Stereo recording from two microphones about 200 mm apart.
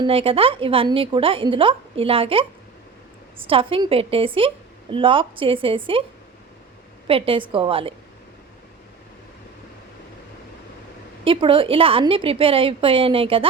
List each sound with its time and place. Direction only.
0.0 s a woman's voice: 30° right (ahead or behind)
7.1 s a woman's voice: 25° right (ahead or behind)
11.2 s a woman's voice: 25° right (ahead or behind)